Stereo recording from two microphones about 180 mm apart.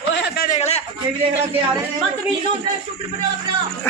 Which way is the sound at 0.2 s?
55° left (ahead or behind).